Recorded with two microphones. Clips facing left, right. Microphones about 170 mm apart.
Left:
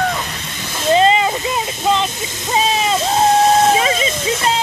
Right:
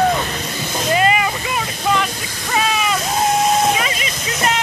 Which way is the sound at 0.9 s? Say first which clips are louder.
Left 4 dB; 25° left (ahead or behind).